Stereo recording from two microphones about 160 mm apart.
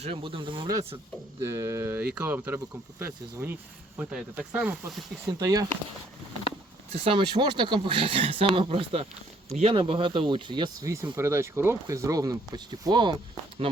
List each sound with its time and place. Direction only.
0.0 s speech: 35° right (ahead or behind)
1.5 s speech: 15° right (ahead or behind)
5.4 s speech: 20° right (ahead or behind)
6.9 s speech: 35° right (ahead or behind)
11.1 s speech: 15° right (ahead or behind)